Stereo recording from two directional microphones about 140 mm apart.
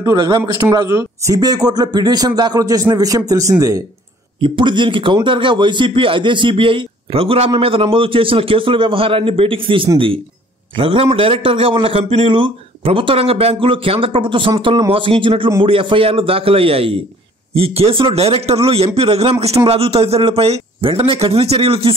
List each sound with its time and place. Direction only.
0.0 s speech: 30° right (ahead or behind)
4.4 s a man's voice: 35° right (ahead or behind)